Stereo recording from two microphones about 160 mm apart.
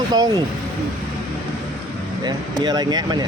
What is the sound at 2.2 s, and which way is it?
Speech, 25° right (ahead or behind).